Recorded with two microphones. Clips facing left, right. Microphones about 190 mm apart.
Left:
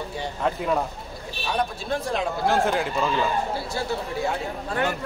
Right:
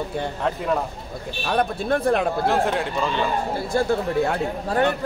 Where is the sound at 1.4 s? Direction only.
60° right (ahead or behind).